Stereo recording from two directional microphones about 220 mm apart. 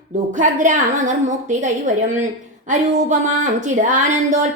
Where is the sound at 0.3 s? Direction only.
35° right (ahead or behind).